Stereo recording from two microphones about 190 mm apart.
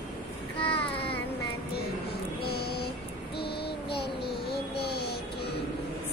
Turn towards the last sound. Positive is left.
turn(degrees=55)  # may be behind; listen again after turning